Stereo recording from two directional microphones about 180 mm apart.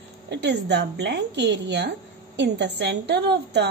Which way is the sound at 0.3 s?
70° right (ahead or behind).